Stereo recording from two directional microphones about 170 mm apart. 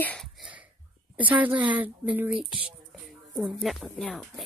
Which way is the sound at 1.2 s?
10° right (ahead or behind).